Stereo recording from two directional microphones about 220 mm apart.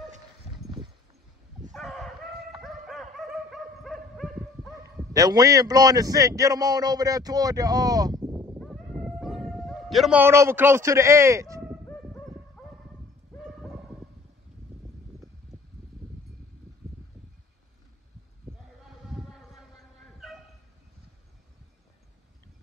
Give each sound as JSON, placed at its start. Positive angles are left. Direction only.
{"t": 1.7, "sound": "dog", "side_deg": 0}
{"t": 5.1, "sound": "a man's voice", "side_deg": -15}
{"t": 8.5, "sound": "dog", "side_deg": 0}
{"t": 11.8, "sound": "a sound", "side_deg": 5}
{"t": 18.5, "sound": "a sound", "side_deg": 0}
{"t": 20.2, "sound": "dog", "side_deg": 0}